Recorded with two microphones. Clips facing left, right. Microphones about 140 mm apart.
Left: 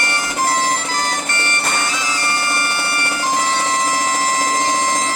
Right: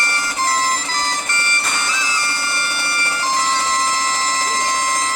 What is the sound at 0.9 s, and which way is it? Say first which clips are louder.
Music: left 2 dB; 55° left (ahead or behind).